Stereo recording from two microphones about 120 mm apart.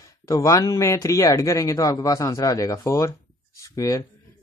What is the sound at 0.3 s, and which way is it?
Speech, 30° left (ahead or behind).